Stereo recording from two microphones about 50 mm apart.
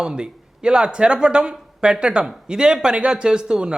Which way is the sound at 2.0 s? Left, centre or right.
Centre.